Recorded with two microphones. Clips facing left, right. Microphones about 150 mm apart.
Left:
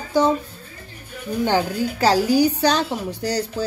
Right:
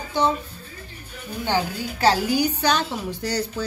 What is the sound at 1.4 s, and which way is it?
A woman's voice, 40° left (ahead or behind).